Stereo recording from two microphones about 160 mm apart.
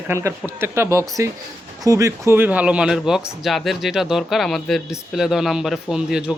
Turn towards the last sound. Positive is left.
turn(degrees=-5)  # may be behind; listen again after turning